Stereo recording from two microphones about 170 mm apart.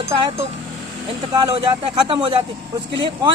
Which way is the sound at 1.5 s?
35° right (ahead or behind).